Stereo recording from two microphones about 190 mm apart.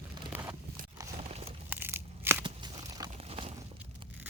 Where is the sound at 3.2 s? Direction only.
30° right (ahead or behind).